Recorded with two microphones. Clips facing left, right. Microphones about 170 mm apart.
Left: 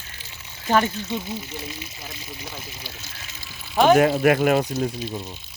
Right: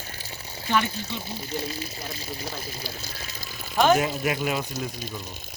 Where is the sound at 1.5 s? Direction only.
35° right (ahead or behind).